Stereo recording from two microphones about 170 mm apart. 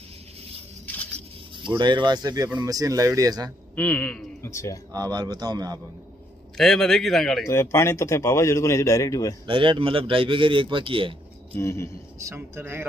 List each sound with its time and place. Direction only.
1.6 s speech: 25° right (ahead or behind)
3.7 s speech: 10° left (ahead or behind)
4.9 s speech: 20° right (ahead or behind)
6.5 s speech: centre (ahead or behind)
7.4 s speech: 15° left (ahead or behind)
9.5 s a man's voice: 30° right (ahead or behind)
11.5 s speech: 15° left (ahead or behind)
12.2 s speech: 15° right (ahead or behind)